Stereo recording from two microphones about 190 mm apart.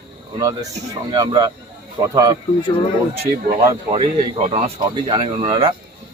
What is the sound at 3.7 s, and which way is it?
Speech, 25° right (ahead or behind).